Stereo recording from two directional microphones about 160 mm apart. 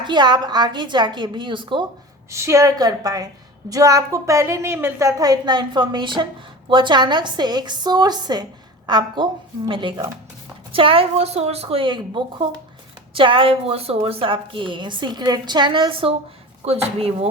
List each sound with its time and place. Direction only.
0.0 s a woman's voice: 30° right (ahead or behind)
2.3 s a woman's voice: 20° right (ahead or behind); by 17.2 s 40° right (ahead or behind)